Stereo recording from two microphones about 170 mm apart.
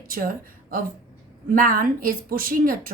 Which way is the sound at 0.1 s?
55° right (ahead or behind).